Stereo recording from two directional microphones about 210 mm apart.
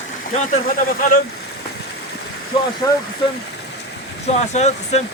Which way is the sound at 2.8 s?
15° left (ahead or behind).